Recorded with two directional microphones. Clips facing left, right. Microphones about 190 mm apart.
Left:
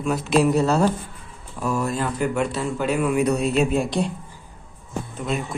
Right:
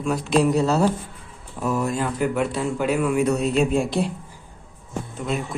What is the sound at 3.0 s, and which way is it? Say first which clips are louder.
Speech: left 2 dB; 15° left (ahead or behind).